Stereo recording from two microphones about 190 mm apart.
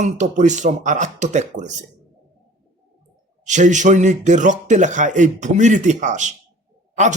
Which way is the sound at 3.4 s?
40° right (ahead or behind).